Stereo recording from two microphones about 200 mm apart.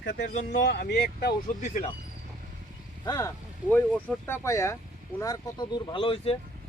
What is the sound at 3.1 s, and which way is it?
Speech, 15° left (ahead or behind).